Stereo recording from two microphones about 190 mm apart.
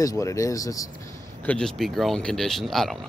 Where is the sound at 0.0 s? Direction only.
15° left (ahead or behind).